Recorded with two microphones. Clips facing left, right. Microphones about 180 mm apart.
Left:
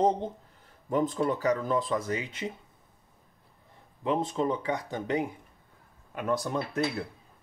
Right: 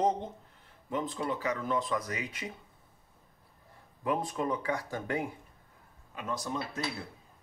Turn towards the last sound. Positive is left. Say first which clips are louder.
# left 6 dB
turn(degrees=60)  # may be behind; listen again after turning